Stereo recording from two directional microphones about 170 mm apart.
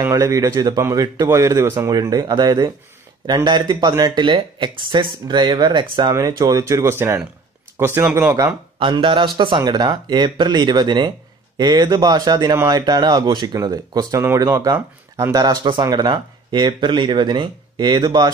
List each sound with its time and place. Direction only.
0.0 s a man's voice: 15° right (ahead or behind)
8.7 s a man's voice: 30° right (ahead or behind)